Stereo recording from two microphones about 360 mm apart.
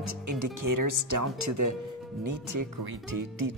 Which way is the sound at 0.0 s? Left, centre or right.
Right.